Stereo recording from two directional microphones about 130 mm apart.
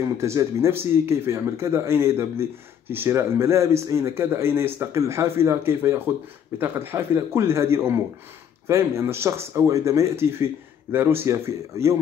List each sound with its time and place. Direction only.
0.0 s speech: 25° right (ahead or behind)